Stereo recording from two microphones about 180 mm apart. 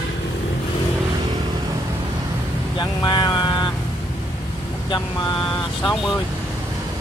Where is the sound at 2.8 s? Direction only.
25° left (ahead or behind).